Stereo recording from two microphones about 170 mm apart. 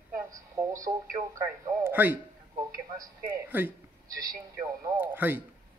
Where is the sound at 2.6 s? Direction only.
20° right (ahead or behind).